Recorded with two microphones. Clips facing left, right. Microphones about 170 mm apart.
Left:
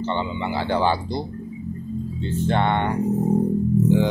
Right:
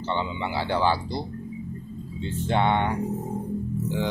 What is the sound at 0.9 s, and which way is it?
Speech, 20° left (ahead or behind).